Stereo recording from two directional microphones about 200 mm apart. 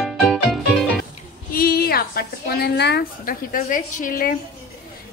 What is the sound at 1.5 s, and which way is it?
A woman's voice, 50° left (ahead or behind).